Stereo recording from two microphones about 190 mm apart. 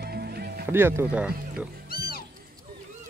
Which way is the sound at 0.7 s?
10° right (ahead or behind).